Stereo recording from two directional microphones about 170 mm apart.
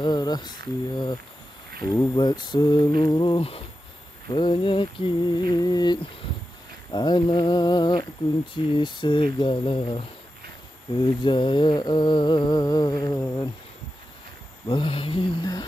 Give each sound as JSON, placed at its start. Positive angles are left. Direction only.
{"t": 0.0, "sound": "humming", "side_deg": 25}
{"t": 14.7, "sound": "humming", "side_deg": 30}